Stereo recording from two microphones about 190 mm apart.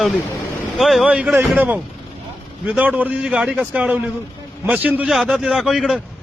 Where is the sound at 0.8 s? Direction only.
Centre (ahead or behind).